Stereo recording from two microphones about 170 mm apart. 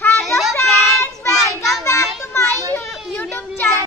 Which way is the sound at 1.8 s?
20° left (ahead or behind).